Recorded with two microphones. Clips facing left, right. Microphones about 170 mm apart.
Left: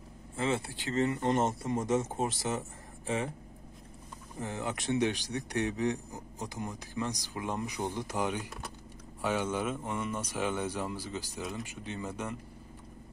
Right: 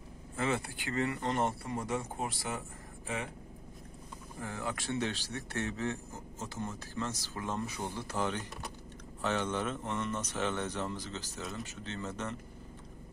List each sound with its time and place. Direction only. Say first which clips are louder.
0.4 s speech: left 2 dB; 25° left (ahead or behind)
4.4 s a man's voice: left 3 dB; 20° left (ahead or behind)